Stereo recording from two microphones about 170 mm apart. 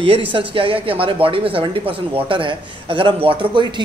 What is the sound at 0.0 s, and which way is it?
A man's voice, 30° right (ahead or behind).